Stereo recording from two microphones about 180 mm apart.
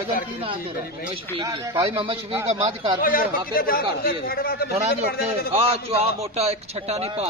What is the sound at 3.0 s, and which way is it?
A man's voice, 50° left (ahead or behind).